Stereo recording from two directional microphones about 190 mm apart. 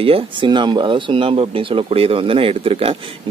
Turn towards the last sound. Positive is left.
turn(degrees=-30)  # may be behind; listen again after turning